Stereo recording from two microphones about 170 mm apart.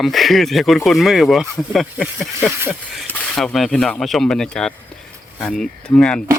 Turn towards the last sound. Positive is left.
turn(degrees=5)  # may be behind; listen again after turning